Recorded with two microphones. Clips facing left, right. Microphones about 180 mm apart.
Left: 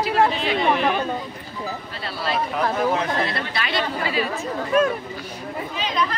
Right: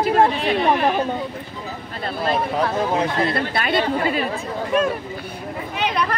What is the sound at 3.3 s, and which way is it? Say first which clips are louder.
Speech: right 5 dB; 50° right (ahead or behind).